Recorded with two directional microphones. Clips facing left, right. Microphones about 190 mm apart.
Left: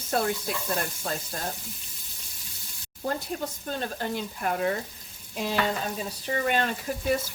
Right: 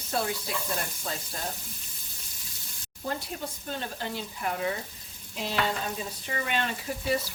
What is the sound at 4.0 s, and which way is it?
Speech, 50° left (ahead or behind).